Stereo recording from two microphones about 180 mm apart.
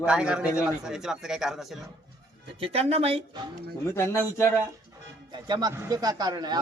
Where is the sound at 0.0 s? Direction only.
5° right (ahead or behind).